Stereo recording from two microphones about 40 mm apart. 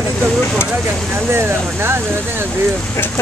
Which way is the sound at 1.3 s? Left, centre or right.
Right.